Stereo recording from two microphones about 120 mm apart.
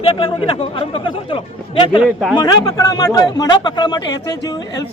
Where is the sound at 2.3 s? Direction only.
35° left (ahead or behind).